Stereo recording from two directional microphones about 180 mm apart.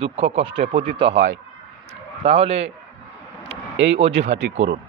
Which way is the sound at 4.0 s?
35° right (ahead or behind).